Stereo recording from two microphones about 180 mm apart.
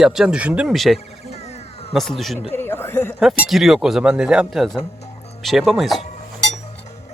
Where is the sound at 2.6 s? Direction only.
10° left (ahead or behind).